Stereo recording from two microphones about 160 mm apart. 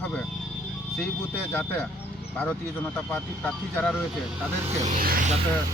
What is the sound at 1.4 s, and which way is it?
Speech, 15° left (ahead or behind).